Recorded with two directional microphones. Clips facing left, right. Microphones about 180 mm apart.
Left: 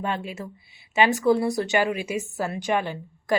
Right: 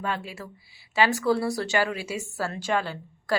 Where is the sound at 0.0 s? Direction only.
20° left (ahead or behind).